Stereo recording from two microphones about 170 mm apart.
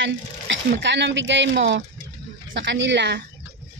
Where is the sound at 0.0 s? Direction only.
90° right.